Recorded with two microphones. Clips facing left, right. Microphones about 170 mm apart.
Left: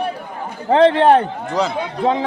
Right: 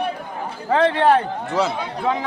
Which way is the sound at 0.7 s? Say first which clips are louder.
Left 5 dB; 25° left (ahead or behind).